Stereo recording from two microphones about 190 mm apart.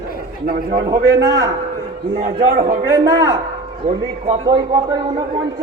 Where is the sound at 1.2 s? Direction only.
60° right (ahead or behind).